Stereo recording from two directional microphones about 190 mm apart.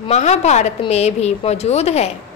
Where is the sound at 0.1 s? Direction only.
35° left (ahead or behind).